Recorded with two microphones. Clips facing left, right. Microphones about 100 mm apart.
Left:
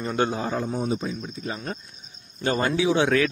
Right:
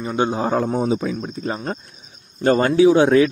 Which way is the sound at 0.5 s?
60° right (ahead or behind).